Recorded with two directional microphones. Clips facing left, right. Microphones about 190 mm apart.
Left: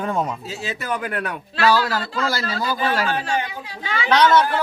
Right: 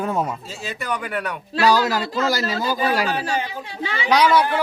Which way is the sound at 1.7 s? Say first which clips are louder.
Right 1 dB; 15° right (ahead or behind).